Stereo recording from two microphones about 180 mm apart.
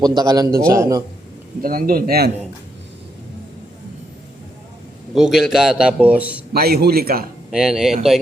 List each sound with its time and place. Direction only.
0.0 s a man's voice: 20° right (ahead or behind)
1.6 s a man's voice: 55° right (ahead or behind)
5.1 s a man's voice: 5° right (ahead or behind)
6.5 s a man's voice: 60° right (ahead or behind)
7.5 s a man's voice: 5° right (ahead or behind)